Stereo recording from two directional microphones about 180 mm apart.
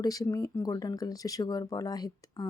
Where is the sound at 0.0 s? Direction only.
20° left (ahead or behind).